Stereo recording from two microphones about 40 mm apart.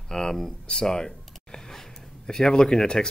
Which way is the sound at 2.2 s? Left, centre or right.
Centre.